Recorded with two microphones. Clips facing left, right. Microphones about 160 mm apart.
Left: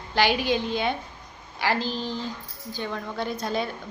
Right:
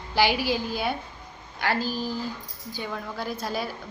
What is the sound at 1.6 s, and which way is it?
Speech, 5° right (ahead or behind).